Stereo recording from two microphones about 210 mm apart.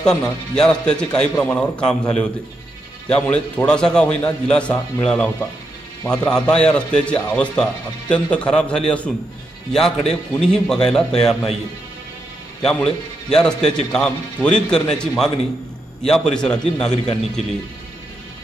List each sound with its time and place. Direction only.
0.0 s a man's voice: 5° left (ahead or behind)
12.6 s a man's voice: 5° left (ahead or behind)